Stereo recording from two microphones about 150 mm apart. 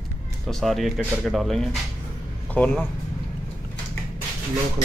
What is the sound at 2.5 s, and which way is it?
Speech, 10° left (ahead or behind).